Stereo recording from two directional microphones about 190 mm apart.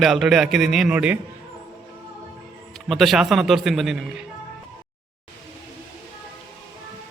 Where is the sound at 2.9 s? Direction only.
Centre (ahead or behind).